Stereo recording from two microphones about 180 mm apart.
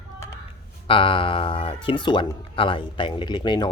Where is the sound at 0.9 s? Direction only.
30° left (ahead or behind).